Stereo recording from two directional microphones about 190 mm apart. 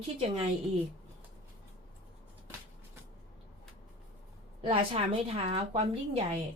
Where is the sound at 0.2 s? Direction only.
30° right (ahead or behind).